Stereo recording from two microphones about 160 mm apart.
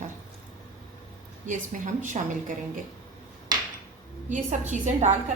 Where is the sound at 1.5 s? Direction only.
55° right (ahead or behind).